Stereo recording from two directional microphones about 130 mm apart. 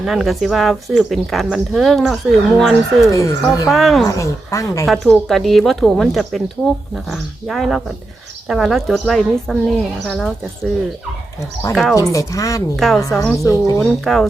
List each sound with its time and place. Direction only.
0.0 s speech: centre (ahead or behind)
3.1 s speech: 25° left (ahead or behind)
3.7 s speech: centre (ahead or behind)
4.0 s speech: 25° left (ahead or behind)
5.1 s speech: centre (ahead or behind)
11.7 s speech: centre (ahead or behind)
11.9 s speech: 25° left (ahead or behind)
12.7 s speech: centre (ahead or behind)
13.0 s speech: 25° left (ahead or behind)
13.8 s speech: centre (ahead or behind)